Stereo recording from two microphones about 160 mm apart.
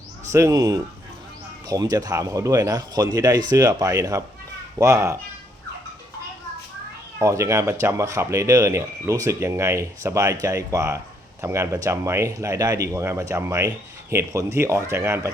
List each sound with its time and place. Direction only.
0.3 s speech: 20° right (ahead or behind)
7.2 s speech: 20° right (ahead or behind)